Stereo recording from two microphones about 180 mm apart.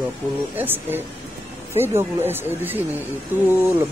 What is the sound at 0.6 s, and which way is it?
Speech, 10° right (ahead or behind).